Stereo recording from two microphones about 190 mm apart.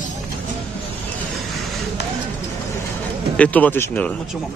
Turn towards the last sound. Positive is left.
turn(degrees=10)  # may be behind; listen again after turning